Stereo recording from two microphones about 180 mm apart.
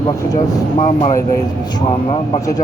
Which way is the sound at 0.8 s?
40° left (ahead or behind).